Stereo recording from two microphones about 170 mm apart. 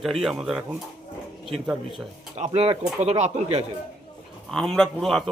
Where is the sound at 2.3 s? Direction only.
40° right (ahead or behind).